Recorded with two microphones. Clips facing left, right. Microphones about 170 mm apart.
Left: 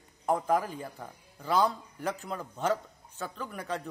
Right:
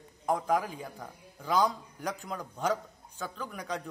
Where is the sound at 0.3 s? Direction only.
Centre (ahead or behind).